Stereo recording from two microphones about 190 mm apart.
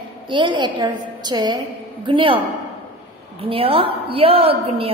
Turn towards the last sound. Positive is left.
turn(degrees=-30)  # may be behind; listen again after turning